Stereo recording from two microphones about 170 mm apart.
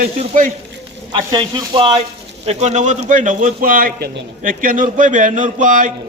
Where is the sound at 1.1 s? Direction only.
25° right (ahead or behind).